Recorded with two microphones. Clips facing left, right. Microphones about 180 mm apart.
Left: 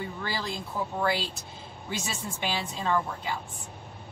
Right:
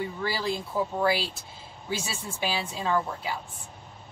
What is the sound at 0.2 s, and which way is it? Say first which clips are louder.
Speech: right 2 dB; 10° right (ahead or behind).